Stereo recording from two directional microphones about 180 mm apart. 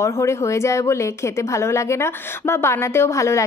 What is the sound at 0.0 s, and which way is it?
A woman's voice, 15° left (ahead or behind).